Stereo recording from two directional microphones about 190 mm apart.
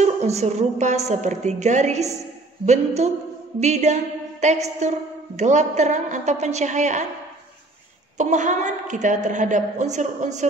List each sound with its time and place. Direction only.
0.0 s a woman's voice: 35° right (ahead or behind)
8.2 s a woman's voice: 40° right (ahead or behind)